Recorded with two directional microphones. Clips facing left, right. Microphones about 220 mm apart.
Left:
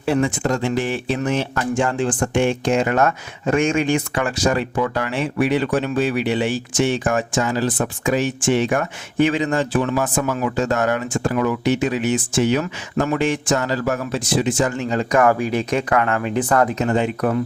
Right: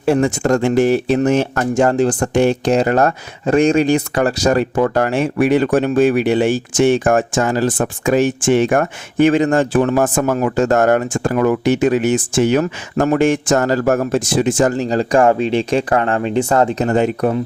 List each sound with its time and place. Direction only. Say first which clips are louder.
0.0 s speech: right 4 dB; 45° right (ahead or behind)